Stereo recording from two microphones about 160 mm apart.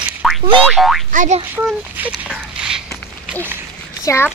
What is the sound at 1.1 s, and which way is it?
Speech, 55° right (ahead or behind).